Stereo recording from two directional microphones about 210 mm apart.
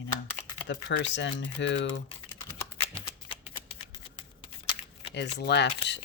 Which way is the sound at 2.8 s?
25° left (ahead or behind).